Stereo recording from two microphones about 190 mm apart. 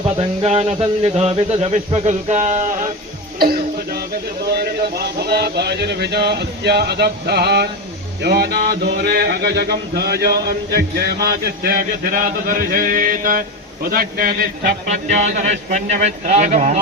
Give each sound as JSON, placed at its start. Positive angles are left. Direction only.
{"t": 0.2, "sound": "a man's voice", "side_deg": -35}
{"t": 3.3, "sound": "music", "side_deg": -50}
{"t": 4.4, "sound": "a sound", "side_deg": -55}
{"t": 13.8, "sound": "a man's voice", "side_deg": -50}